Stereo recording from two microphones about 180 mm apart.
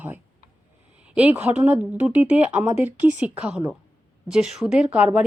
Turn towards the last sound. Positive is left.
turn(degrees=-5)  # may be behind; listen again after turning